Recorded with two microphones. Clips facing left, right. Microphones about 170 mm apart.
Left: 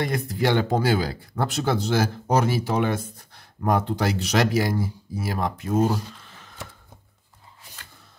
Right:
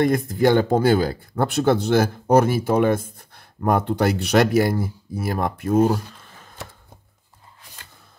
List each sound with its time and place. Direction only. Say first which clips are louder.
0.0 s speech: right 6 dB; 50° right (ahead or behind)